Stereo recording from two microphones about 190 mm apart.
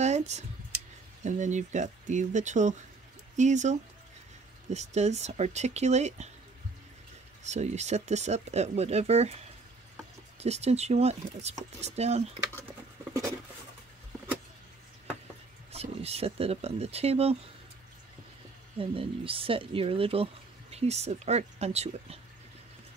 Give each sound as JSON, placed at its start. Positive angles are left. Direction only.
{"t": 0.0, "sound": "a sound", "side_deg": -35}
{"t": 1.2, "sound": "speech", "side_deg": -40}
{"t": 7.4, "sound": "speech", "side_deg": -35}
{"t": 10.4, "sound": "speech", "side_deg": -35}
{"t": 15.7, "sound": "speech", "side_deg": -35}
{"t": 18.8, "sound": "speech", "side_deg": -30}